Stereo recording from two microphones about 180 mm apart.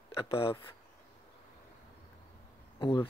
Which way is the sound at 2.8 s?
30° left (ahead or behind).